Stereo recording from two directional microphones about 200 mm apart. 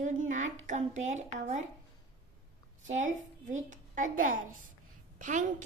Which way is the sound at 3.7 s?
40° right (ahead or behind).